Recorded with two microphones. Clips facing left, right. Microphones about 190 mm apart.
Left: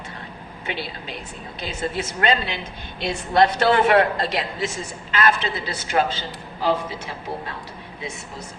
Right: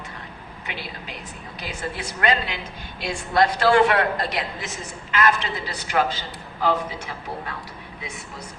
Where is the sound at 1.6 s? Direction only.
25° left (ahead or behind).